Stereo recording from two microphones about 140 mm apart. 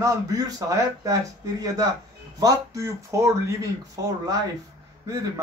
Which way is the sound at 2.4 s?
25° right (ahead or behind).